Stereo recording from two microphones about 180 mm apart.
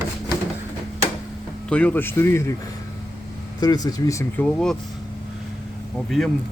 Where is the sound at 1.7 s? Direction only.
10° left (ahead or behind).